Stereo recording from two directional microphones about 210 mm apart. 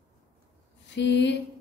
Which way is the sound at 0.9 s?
55° left (ahead or behind).